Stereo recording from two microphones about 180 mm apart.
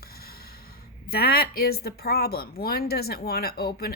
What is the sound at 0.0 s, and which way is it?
Speech, 60° left (ahead or behind).